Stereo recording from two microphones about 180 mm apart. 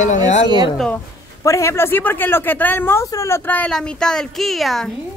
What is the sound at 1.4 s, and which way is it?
Speech, 15° left (ahead or behind).